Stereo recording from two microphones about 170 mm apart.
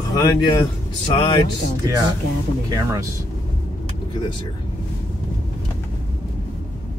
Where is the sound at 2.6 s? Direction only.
20° right (ahead or behind).